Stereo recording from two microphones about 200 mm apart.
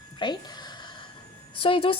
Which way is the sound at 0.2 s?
25° left (ahead or behind).